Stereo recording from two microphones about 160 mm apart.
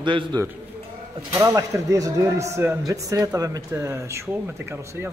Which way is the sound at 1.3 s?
20° right (ahead or behind).